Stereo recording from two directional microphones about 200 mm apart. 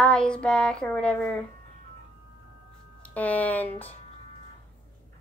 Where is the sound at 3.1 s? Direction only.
5° left (ahead or behind).